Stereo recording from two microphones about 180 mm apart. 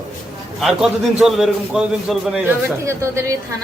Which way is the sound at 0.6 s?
Centre (ahead or behind).